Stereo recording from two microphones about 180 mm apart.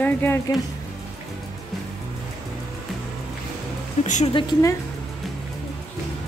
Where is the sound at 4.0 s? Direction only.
40° left (ahead or behind).